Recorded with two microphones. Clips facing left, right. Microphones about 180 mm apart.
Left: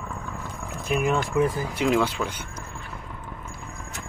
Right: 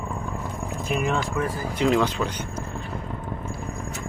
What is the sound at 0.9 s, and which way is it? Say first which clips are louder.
Speech: left 2 dB; centre (ahead or behind).